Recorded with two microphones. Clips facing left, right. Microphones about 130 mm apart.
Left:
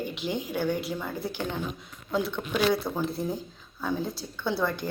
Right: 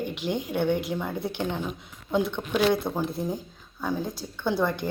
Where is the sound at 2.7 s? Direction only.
20° right (ahead or behind).